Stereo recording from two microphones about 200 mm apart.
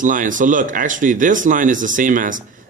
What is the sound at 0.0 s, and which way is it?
Speech, 40° right (ahead or behind).